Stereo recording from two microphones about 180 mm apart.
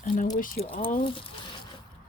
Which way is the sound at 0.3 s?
50° left (ahead or behind).